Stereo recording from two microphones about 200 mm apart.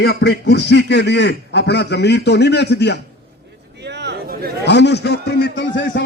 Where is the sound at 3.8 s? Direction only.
60° right (ahead or behind).